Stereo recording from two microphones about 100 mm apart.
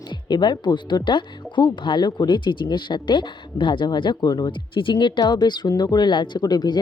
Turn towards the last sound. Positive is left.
turn(degrees=45)  # may be behind; listen again after turning